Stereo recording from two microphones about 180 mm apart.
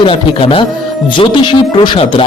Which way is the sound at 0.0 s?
30° left (ahead or behind).